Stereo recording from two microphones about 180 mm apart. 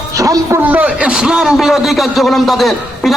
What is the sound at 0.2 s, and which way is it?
A man's voice, 20° right (ahead or behind).